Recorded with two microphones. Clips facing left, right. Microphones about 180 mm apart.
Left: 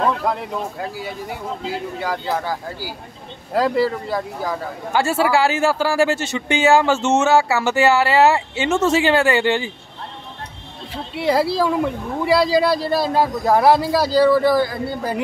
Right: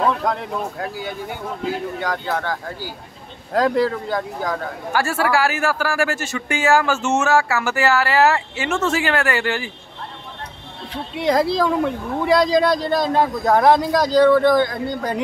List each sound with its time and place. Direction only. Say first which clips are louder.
0.0 s speech: even; 5° left (ahead or behind)
4.9 s speech: left 2 dB; 25° left (ahead or behind)
11.1 s speech: even; 5° left (ahead or behind)